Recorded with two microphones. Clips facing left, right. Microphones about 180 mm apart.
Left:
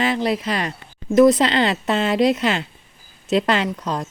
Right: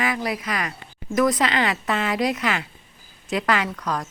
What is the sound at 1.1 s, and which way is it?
A woman's voice, 25° left (ahead or behind).